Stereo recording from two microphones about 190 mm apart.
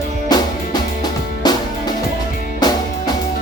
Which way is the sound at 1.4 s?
20° left (ahead or behind).